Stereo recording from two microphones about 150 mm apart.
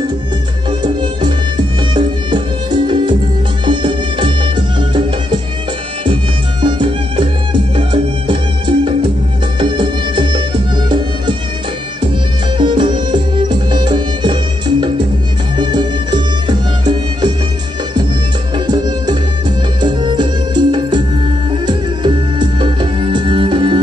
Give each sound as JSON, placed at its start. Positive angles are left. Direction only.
{"t": 0.7, "sound": "music", "side_deg": -30}
{"t": 6.6, "sound": "music", "side_deg": -35}
{"t": 12.5, "sound": "music", "side_deg": -30}
{"t": 18.7, "sound": "music", "side_deg": -30}